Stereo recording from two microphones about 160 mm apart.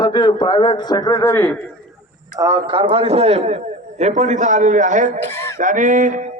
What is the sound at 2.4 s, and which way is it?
A man's voice, 25° right (ahead or behind).